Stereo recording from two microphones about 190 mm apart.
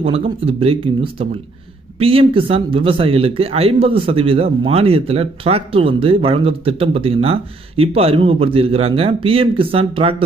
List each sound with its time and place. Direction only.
0.0 s speech: 30° right (ahead or behind)
2.0 s speech: 30° right (ahead or behind)